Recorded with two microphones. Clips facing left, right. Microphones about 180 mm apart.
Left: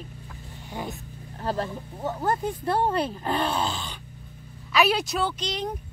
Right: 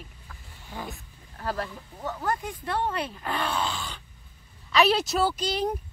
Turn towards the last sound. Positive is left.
turn(degrees=-5)  # may be behind; listen again after turning